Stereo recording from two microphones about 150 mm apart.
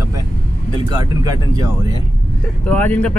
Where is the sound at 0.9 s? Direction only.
25° right (ahead or behind).